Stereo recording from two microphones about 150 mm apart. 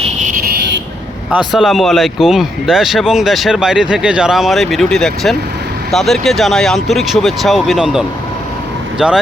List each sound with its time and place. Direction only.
0.0 s vehicle: 55° right (ahead or behind)
1.3 s speech: centre (ahead or behind)